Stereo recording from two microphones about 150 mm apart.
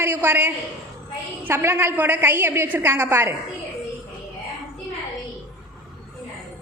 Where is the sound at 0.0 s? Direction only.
15° right (ahead or behind).